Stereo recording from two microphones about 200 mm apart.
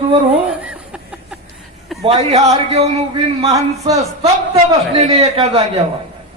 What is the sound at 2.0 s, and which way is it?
A man's voice, 30° right (ahead or behind).